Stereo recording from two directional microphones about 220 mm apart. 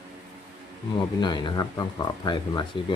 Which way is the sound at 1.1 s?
20° left (ahead or behind).